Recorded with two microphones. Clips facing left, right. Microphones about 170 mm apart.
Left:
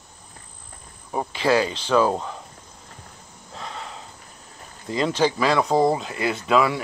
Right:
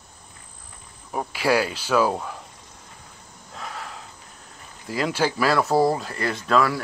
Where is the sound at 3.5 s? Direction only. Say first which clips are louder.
Even; centre (ahead or behind).